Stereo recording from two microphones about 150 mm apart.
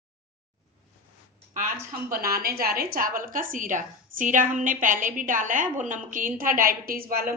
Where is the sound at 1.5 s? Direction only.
65° right (ahead or behind).